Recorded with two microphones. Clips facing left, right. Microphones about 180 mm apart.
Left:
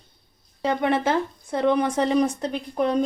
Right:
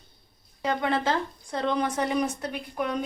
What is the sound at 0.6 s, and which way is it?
Speech, 25° left (ahead or behind).